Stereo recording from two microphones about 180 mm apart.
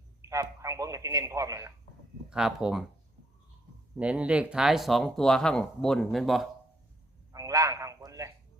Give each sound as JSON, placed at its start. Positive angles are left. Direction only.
{"t": 0.2, "sound": "speech", "side_deg": -15}
{"t": 2.3, "sound": "speech", "side_deg": -5}
{"t": 3.9, "sound": "speech", "side_deg": -5}
{"t": 7.3, "sound": "a sound", "side_deg": -20}